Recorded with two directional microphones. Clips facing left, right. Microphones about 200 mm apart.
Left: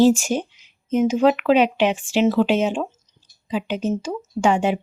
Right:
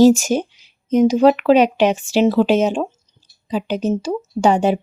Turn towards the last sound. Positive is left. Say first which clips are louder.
# right 4 dB
turn(degrees=-35)  # may be behind; listen again after turning